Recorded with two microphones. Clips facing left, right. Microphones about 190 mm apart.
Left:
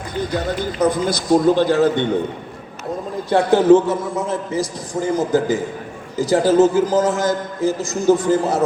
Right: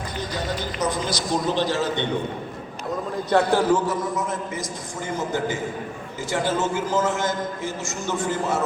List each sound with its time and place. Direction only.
0.3 s speech: 55° left (ahead or behind)
3.2 s a man's voice: 15° left (ahead or behind); by 8.6 s 35° left (ahead or behind)